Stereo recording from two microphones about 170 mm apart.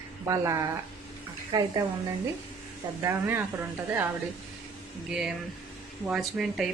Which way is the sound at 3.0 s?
10° right (ahead or behind).